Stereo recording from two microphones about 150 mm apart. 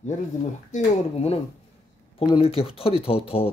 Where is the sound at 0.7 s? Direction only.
45° left (ahead or behind).